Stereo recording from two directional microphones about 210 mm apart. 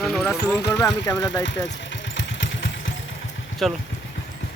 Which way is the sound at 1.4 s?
60° left (ahead or behind).